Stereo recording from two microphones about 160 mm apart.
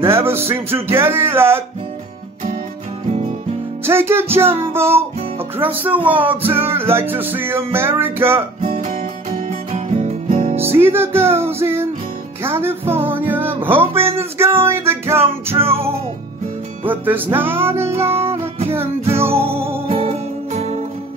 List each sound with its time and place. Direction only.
0.0 s music: 15° right (ahead or behind)
3.9 s music: 15° right (ahead or behind)
9.7 s music: 45° right (ahead or behind)
10.7 s music: 15° right (ahead or behind)
12.4 s speech: 15° right (ahead or behind)
14.4 s music: 15° right (ahead or behind)
16.8 s music: 10° right (ahead or behind)
19.1 s music: 15° right (ahead or behind)
19.9 s music: 35° right (ahead or behind)